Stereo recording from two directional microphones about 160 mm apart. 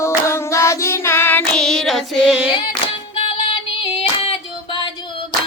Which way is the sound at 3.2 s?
35° left (ahead or behind).